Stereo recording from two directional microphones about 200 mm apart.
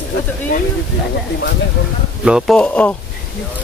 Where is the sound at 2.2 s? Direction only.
Centre (ahead or behind).